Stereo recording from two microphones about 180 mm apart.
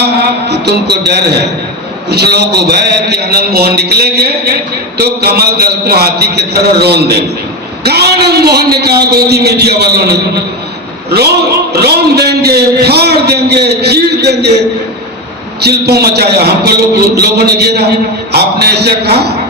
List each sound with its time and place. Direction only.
0.0 s a sound: 65° right (ahead or behind)
2.0 s a man's voice: 65° right (ahead or behind)
11.7 s a man's voice: 65° right (ahead or behind)
15.6 s a man's voice: 65° right (ahead or behind)